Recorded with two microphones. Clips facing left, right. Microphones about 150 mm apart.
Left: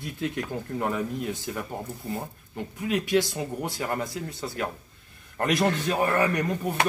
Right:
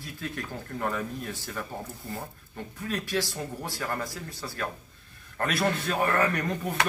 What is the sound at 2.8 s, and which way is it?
Speech, 15° left (ahead or behind).